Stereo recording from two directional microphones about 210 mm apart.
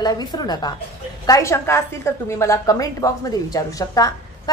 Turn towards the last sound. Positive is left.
turn(degrees=15)  # may be behind; listen again after turning